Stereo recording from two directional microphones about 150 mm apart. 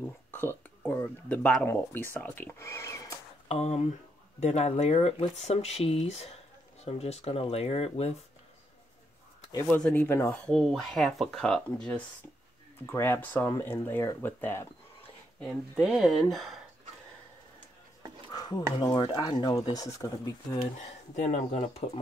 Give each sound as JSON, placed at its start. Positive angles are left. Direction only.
{"t": 0.3, "sound": "speech", "side_deg": 15}
{"t": 3.4, "sound": "speech", "side_deg": 45}
{"t": 9.8, "sound": "speech", "side_deg": 15}
{"t": 10.5, "sound": "speech", "side_deg": 0}
{"t": 12.8, "sound": "speech", "side_deg": 15}
{"t": 15.4, "sound": "speech", "side_deg": 0}
{"t": 18.3, "sound": "a sound", "side_deg": 25}
{"t": 18.8, "sound": "speech", "side_deg": 25}
{"t": 20.8, "sound": "speech", "side_deg": 45}